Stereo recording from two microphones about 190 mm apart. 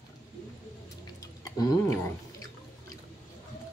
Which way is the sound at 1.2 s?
20° left (ahead or behind).